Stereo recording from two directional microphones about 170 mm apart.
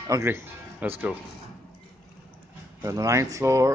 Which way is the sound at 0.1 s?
15° right (ahead or behind).